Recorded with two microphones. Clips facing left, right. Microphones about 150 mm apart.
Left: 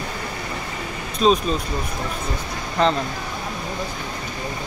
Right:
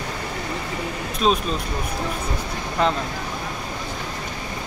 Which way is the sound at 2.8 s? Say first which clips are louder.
Left 2 dB; 5° right (ahead or behind).